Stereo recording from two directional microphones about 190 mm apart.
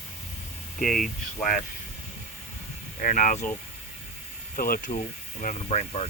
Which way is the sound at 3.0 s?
40° left (ahead or behind).